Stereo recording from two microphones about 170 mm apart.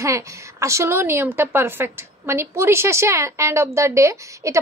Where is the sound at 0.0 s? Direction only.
15° right (ahead or behind).